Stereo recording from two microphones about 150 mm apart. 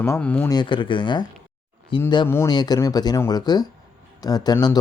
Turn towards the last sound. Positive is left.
turn(degrees=25)  # may be behind; listen again after turning